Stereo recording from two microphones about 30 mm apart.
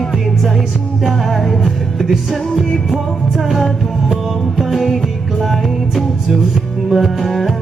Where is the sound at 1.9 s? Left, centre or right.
Centre.